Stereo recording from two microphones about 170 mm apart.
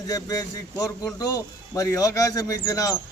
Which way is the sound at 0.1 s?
20° left (ahead or behind).